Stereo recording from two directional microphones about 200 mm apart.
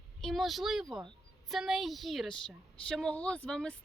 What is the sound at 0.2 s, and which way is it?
A woman's voice, centre (ahead or behind).